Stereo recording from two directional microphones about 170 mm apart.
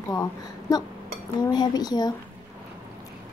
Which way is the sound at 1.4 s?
25° left (ahead or behind).